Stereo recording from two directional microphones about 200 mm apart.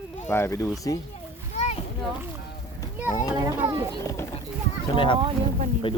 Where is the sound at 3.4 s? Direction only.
15° right (ahead or behind).